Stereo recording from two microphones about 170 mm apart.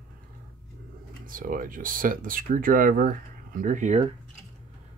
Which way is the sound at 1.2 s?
55° right (ahead or behind).